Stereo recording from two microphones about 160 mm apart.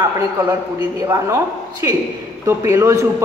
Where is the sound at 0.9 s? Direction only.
20° right (ahead or behind).